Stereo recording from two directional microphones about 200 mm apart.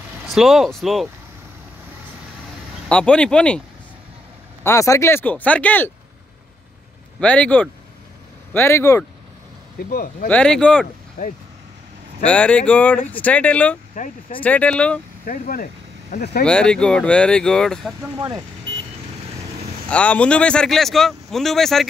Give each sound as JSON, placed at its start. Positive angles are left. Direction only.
{"t": 0.3, "sound": "speech", "side_deg": 0}
{"t": 2.9, "sound": "speech", "side_deg": 5}
{"t": 4.6, "sound": "speech", "side_deg": 15}
{"t": 7.2, "sound": "speech", "side_deg": 5}
{"t": 9.8, "sound": "speech", "side_deg": 45}
{"t": 10.2, "sound": "speech", "side_deg": 5}
{"t": 11.2, "sound": "speech", "side_deg": 40}
{"t": 12.3, "sound": "speech", "side_deg": 5}
{"t": 14.0, "sound": "speech", "side_deg": 40}
{"t": 14.4, "sound": "speech", "side_deg": 5}
{"t": 15.2, "sound": "speech", "side_deg": 45}
{"t": 16.4, "sound": "speech", "side_deg": 5}
{"t": 19.9, "sound": "speech", "side_deg": 5}